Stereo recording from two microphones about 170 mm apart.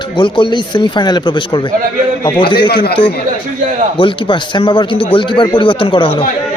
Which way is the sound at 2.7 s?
65° left (ahead or behind).